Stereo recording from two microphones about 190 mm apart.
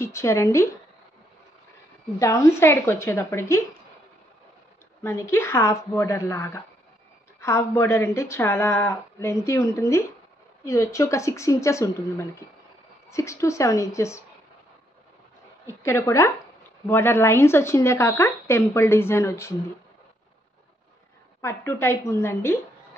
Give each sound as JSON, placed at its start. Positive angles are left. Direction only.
{"t": 0.0, "sound": "speech", "side_deg": 15}
{"t": 2.1, "sound": "speech", "side_deg": 15}
{"t": 5.0, "sound": "speech", "side_deg": 15}
{"t": 15.6, "sound": "speech", "side_deg": 15}
{"t": 21.4, "sound": "speech", "side_deg": 15}